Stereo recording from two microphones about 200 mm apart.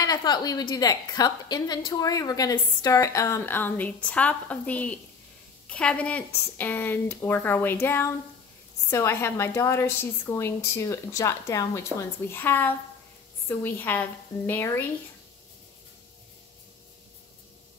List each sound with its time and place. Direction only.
0.0 s a woman's voice: 20° left (ahead or behind)